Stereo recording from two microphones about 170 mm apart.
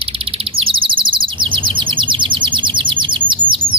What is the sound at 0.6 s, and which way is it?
Chirp, 30° right (ahead or behind).